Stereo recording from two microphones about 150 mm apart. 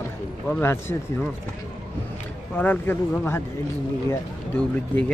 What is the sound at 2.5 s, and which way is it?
Speech, 10° left (ahead or behind).